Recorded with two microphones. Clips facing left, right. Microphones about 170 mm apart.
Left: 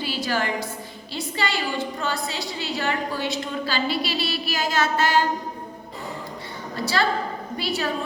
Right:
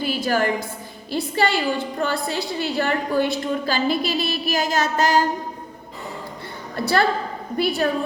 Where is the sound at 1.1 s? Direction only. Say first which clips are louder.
Right 6 dB; 55° right (ahead or behind).